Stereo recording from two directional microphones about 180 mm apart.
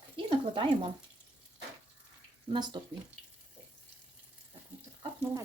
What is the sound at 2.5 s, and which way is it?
Speech, 25° right (ahead or behind).